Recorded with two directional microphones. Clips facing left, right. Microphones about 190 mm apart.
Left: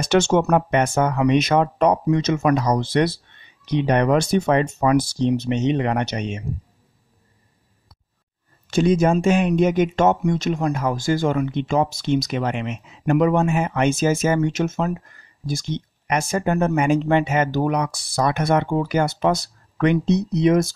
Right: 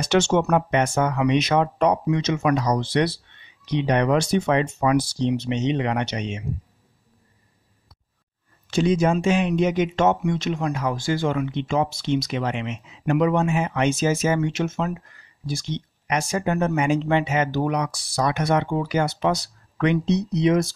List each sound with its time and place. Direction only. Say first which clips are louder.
0.0 s speech: left 2 dB; 45° left (ahead or behind)
8.6 s speech: left 2 dB; 50° left (ahead or behind)